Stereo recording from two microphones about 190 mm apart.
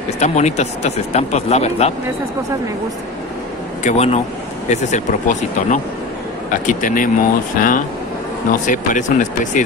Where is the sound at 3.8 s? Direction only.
35° left (ahead or behind).